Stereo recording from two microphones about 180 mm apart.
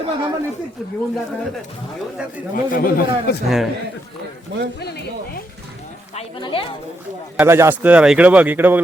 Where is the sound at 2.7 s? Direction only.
55° left (ahead or behind).